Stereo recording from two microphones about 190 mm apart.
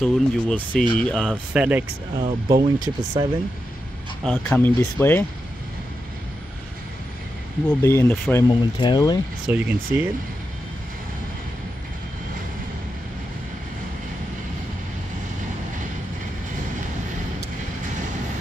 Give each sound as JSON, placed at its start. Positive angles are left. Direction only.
{"t": 0.0, "sound": "speech", "side_deg": 0}
{"t": 1.3, "sound": "speech", "side_deg": -5}
{"t": 2.1, "sound": "speech", "side_deg": -25}
{"t": 4.4, "sound": "speech", "side_deg": 10}
{"t": 7.8, "sound": "speech", "side_deg": 15}
{"t": 8.7, "sound": "speech", "side_deg": 25}
{"t": 9.5, "sound": "speech", "side_deg": -10}